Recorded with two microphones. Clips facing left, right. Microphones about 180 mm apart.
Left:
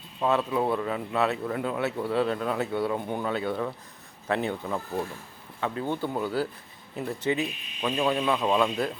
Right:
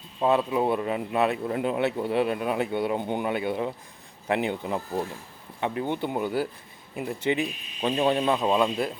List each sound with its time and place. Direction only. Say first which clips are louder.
0.2 s speech: right 2 dB; 15° right (ahead or behind)
7.8 s speech: right 2 dB; 30° right (ahead or behind)
8.4 s speech: right 1 dB; 15° right (ahead or behind)